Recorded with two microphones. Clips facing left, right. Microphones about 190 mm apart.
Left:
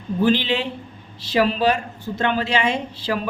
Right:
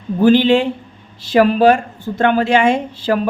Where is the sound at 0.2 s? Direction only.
50° right (ahead or behind).